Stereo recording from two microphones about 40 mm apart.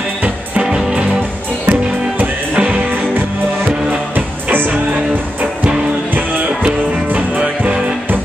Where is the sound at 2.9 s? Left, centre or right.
Right.